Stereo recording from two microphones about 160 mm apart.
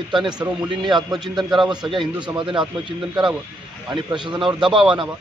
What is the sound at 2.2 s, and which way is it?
Speech, 30° right (ahead or behind).